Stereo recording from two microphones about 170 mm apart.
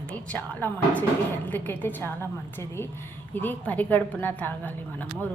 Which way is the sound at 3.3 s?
10° left (ahead or behind).